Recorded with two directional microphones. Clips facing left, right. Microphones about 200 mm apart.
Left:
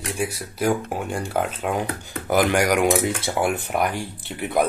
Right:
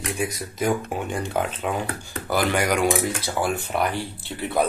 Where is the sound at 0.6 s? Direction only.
10° left (ahead or behind).